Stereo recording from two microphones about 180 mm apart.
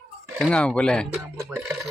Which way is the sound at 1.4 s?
15° right (ahead or behind).